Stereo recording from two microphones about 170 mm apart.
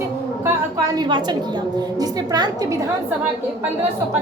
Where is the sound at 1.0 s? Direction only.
25° right (ahead or behind).